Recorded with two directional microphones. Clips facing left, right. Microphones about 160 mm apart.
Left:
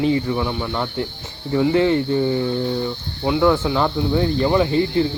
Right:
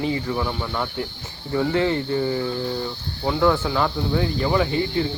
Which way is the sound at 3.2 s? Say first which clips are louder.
Left 3 dB; 10° left (ahead or behind).